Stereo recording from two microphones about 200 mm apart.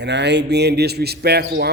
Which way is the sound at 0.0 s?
60° right (ahead or behind).